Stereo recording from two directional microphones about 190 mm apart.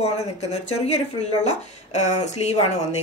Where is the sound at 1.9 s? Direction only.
35° left (ahead or behind).